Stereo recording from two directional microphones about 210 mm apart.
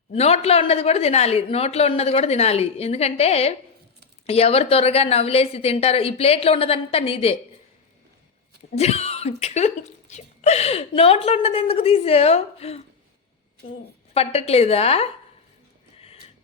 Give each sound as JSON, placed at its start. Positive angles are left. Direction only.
{"t": 0.1, "sound": "speech", "side_deg": 30}
{"t": 8.7, "sound": "speech", "side_deg": 30}
{"t": 14.1, "sound": "speech", "side_deg": 30}